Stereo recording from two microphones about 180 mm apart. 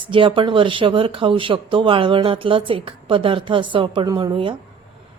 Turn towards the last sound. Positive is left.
turn(degrees=-25)  # may be behind; listen again after turning